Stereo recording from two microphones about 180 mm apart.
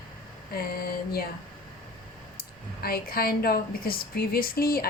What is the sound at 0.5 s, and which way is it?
Speech, 55° left (ahead or behind).